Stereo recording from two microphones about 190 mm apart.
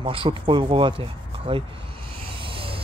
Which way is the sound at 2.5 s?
30° right (ahead or behind).